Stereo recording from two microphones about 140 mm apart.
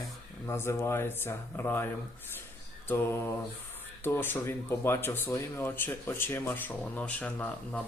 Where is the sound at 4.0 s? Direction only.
15° left (ahead or behind).